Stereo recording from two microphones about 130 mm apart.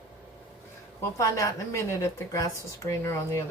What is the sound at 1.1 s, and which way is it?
A woman's voice, 25° left (ahead or behind).